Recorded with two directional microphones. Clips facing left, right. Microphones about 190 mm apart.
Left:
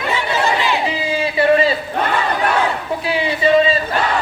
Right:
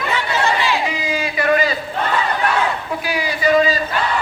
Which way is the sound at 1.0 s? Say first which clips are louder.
Left 4 dB; 30° left (ahead or behind).